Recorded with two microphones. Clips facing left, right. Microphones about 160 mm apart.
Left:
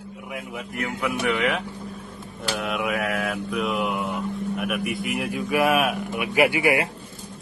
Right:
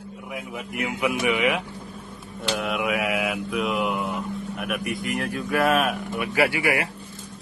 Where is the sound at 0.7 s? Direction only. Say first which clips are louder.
Right 2 dB; 10° right (ahead or behind).